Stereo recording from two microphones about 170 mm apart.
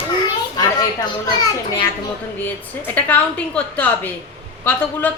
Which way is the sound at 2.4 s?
10° left (ahead or behind).